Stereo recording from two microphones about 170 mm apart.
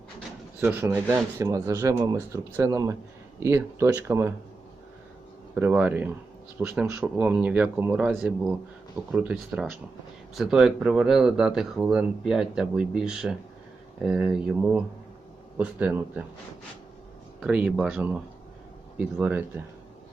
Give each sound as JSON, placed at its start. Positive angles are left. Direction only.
{"t": 0.6, "sound": "speech", "side_deg": -15}
{"t": 5.5, "sound": "speech", "side_deg": -10}
{"t": 17.4, "sound": "speech", "side_deg": -5}